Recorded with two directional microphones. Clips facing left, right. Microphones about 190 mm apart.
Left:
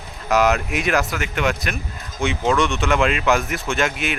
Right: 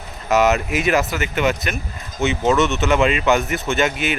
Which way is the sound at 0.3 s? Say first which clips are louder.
Right 1 dB; centre (ahead or behind).